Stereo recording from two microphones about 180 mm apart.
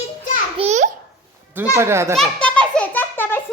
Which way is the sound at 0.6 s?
40° right (ahead or behind).